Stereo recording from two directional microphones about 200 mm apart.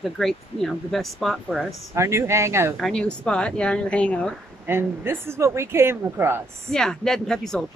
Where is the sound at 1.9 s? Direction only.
15° right (ahead or behind).